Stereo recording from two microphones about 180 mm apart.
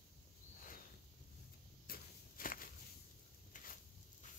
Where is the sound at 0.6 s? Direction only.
50° left (ahead or behind).